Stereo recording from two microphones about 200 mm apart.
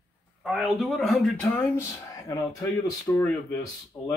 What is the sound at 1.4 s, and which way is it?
Speech, 10° left (ahead or behind).